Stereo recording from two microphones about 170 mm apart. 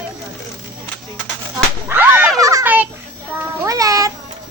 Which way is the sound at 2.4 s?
20° right (ahead or behind).